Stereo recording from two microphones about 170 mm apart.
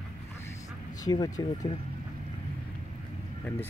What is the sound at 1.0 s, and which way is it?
Speech, 20° left (ahead or behind).